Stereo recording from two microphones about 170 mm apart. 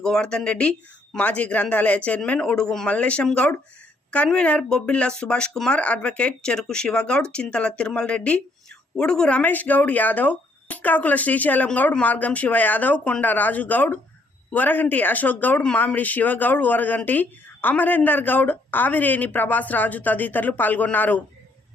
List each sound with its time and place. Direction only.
0.0 s speech: 5° left (ahead or behind)